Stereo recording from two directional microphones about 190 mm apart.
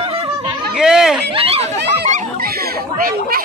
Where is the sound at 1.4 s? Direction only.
30° right (ahead or behind).